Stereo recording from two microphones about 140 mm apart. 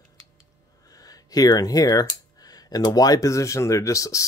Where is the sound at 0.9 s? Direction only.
25° left (ahead or behind).